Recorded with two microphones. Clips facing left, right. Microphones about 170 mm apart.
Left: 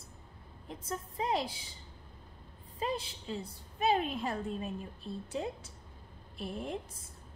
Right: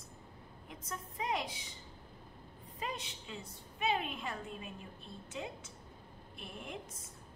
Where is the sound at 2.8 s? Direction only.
30° left (ahead or behind).